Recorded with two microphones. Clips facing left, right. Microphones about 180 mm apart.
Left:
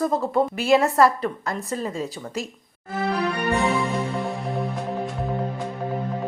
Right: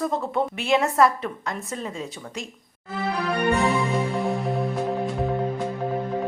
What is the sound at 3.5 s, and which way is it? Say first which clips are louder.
Music: even; centre (ahead or behind).